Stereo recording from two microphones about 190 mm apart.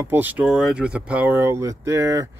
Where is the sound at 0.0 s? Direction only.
10° right (ahead or behind).